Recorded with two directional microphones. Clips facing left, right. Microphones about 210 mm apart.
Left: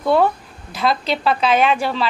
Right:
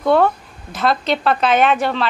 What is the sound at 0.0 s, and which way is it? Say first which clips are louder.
A woman's voice: right 1 dB; 10° left (ahead or behind).